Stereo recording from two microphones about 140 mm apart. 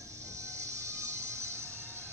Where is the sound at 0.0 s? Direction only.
20° right (ahead or behind).